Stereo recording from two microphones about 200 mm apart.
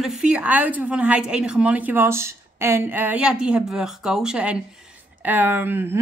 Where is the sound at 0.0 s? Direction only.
5° right (ahead or behind).